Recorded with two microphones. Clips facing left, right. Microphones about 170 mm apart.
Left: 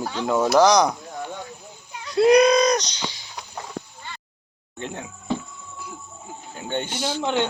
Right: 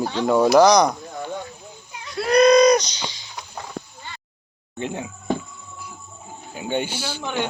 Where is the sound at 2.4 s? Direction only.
5° left (ahead or behind).